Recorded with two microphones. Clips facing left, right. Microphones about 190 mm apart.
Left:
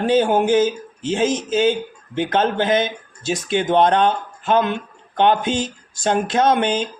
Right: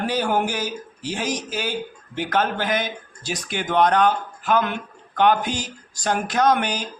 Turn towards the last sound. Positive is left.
turn(degrees=25)  # may be behind; listen again after turning